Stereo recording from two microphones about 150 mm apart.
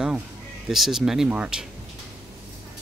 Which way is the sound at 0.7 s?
Centre (ahead or behind).